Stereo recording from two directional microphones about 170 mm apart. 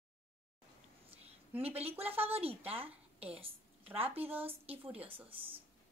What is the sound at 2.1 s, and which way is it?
A woman's voice, 35° right (ahead or behind).